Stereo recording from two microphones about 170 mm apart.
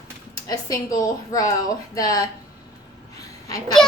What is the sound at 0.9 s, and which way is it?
A woman's voice, 20° left (ahead or behind).